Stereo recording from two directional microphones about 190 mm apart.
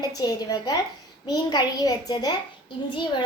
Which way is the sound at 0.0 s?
20° left (ahead or behind).